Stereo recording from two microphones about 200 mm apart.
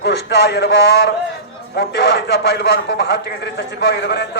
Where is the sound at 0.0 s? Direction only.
55° left (ahead or behind).